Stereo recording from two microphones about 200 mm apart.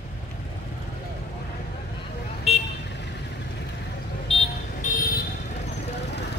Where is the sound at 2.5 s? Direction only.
30° left (ahead or behind).